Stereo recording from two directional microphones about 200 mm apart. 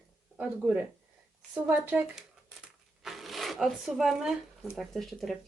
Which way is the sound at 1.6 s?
10° right (ahead or behind).